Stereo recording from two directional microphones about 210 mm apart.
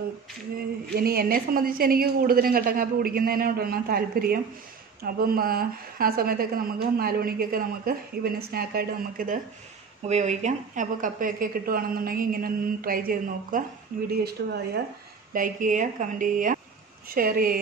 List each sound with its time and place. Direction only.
0.9 s a woman's voice: 45° right (ahead or behind)